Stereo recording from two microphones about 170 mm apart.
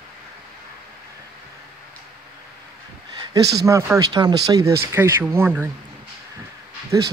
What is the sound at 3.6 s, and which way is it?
Speech, 15° right (ahead or behind).